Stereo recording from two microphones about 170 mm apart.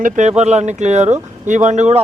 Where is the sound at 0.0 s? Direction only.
40° right (ahead or behind).